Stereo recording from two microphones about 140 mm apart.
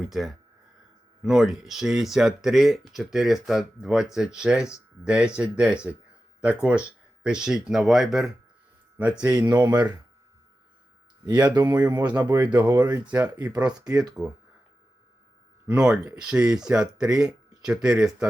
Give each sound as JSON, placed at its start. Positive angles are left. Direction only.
{"t": 0.0, "sound": "speech", "side_deg": 0}
{"t": 9.5, "sound": "speech", "side_deg": -25}
{"t": 11.4, "sound": "speech", "side_deg": -30}
{"t": 12.6, "sound": "speech", "side_deg": -25}
{"t": 13.2, "sound": "speech", "side_deg": -10}
{"t": 13.7, "sound": "speech", "side_deg": -30}
{"t": 15.6, "sound": "speech", "side_deg": -5}